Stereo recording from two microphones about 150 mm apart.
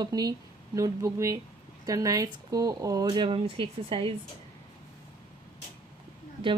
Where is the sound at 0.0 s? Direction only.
25° right (ahead or behind).